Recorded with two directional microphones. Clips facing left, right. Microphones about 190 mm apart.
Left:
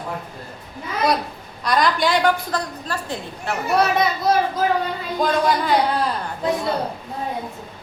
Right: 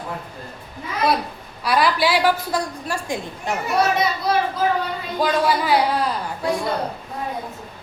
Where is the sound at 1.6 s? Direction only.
5° right (ahead or behind).